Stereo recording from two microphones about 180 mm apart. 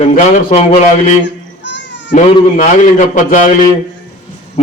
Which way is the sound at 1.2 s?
80° left.